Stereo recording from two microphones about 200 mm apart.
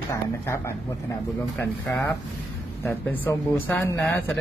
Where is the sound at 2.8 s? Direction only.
10° left (ahead or behind).